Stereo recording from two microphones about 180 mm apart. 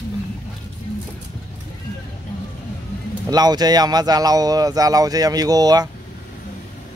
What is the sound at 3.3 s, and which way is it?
Speech, 20° right (ahead or behind).